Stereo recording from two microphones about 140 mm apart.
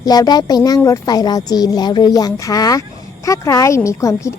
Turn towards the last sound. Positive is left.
turn(degrees=20)  # may be behind; listen again after turning